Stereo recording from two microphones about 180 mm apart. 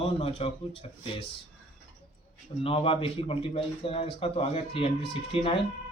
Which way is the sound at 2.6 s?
30° left (ahead or behind).